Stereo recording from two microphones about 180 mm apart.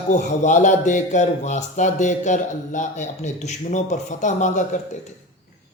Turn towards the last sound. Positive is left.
turn(degrees=45)  # may be behind; listen again after turning